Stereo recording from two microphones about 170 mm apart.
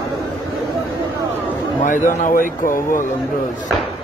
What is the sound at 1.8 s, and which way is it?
A man's voice, 50° left (ahead or behind).